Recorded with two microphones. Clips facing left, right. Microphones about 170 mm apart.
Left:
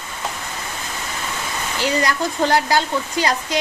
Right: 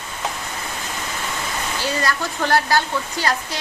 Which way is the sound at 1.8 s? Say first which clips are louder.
Left 4 dB; 20° left (ahead or behind).